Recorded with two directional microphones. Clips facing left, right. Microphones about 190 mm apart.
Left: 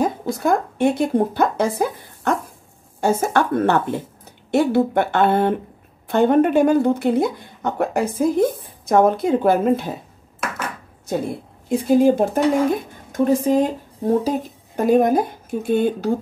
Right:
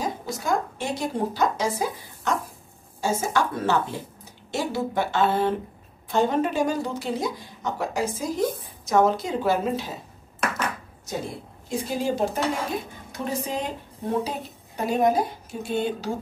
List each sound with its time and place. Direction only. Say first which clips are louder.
0.0 s a woman's voice: left 9 dB; 55° left (ahead or behind)
11.1 s a woman's voice: left 8 dB; 55° left (ahead or behind)